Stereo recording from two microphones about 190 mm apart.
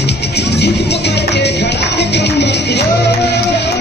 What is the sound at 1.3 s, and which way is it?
Music, 65° left (ahead or behind).